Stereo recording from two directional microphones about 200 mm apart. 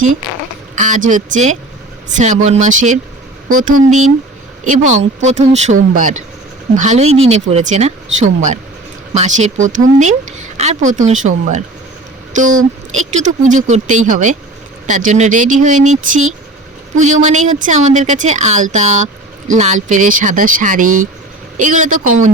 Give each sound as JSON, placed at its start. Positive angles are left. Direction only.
{"t": 0.8, "sound": "a woman's voice", "side_deg": -40}